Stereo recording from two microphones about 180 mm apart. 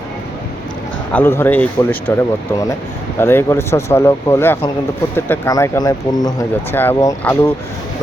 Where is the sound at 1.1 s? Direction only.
10° left (ahead or behind).